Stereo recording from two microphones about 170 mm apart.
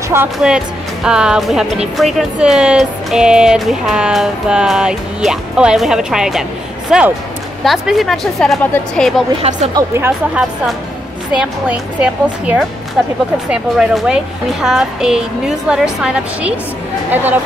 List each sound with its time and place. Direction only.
0.4 s speech: 5° right (ahead or behind)
9.4 s speech: 45° right (ahead or behind)
9.8 s a woman's voice: 15° right (ahead or behind)